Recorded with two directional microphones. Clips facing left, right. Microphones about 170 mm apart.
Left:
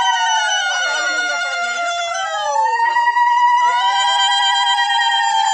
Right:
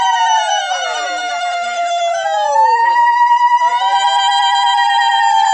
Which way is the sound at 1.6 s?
60° right (ahead or behind).